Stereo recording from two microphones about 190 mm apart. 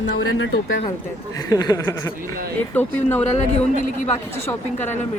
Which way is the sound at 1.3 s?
20° left (ahead or behind).